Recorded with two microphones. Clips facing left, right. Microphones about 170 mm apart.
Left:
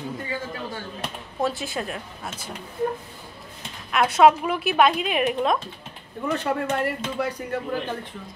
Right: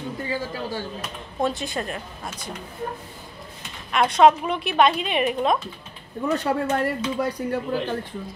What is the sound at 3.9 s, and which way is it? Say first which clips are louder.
A woman's voice: even; 5° left (ahead or behind).